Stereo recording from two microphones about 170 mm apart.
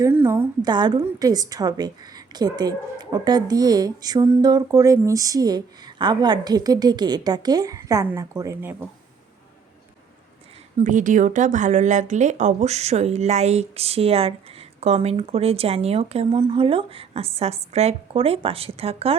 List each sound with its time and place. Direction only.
0.0 s a sound: 15° right (ahead or behind)
0.6 s a woman's voice: 25° right (ahead or behind)
10.8 s a woman's voice: 50° right (ahead or behind)